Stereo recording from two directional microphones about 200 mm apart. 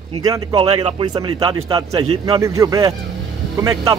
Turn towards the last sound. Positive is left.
turn(degrees=-15)  # may be behind; listen again after turning